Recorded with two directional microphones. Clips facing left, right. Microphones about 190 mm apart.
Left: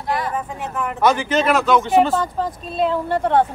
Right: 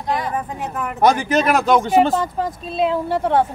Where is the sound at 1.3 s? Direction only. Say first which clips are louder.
Right 1 dB; 40° right (ahead or behind).